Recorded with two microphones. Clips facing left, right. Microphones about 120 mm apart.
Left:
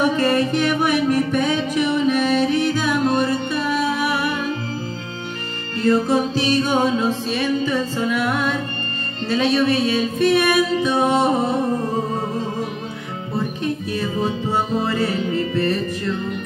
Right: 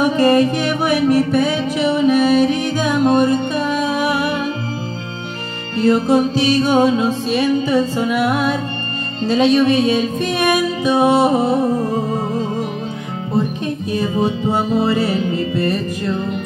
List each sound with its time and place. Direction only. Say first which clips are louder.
0.2 s music: right 5 dB; 15° right (ahead or behind)
5.8 s music: right 4 dB; 15° right (ahead or behind)
13.8 s music: right 8 dB; 20° right (ahead or behind)